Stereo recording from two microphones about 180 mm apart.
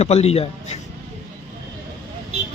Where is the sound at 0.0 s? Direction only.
35° left (ahead or behind).